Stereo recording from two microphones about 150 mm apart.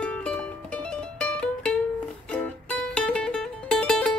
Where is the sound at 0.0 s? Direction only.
10° left (ahead or behind).